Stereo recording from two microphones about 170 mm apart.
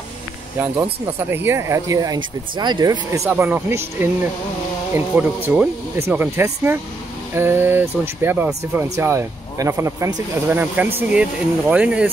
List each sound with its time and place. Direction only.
1.3 s speech: 15° right (ahead or behind)